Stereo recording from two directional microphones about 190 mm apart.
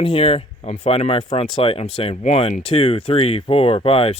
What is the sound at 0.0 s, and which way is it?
Speech, 30° left (ahead or behind).